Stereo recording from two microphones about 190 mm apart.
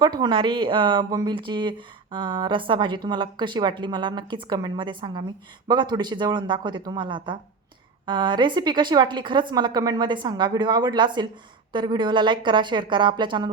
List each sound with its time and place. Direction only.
0.0 s speech: 25° right (ahead or behind)